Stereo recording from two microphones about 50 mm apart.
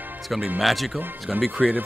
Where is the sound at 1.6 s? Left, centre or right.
Centre.